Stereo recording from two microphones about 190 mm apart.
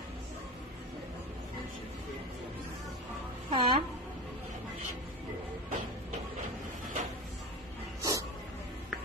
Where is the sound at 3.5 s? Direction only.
25° right (ahead or behind).